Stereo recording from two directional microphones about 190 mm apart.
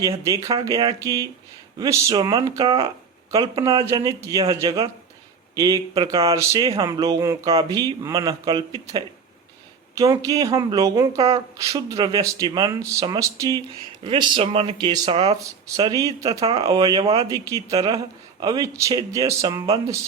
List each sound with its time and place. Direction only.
0.2 s speech: 15° right (ahead or behind)